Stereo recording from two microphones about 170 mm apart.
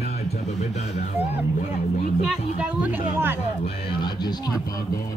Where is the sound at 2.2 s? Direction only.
10° right (ahead or behind).